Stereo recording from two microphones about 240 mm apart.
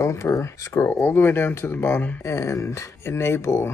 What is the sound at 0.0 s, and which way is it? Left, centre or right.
Speech, centre.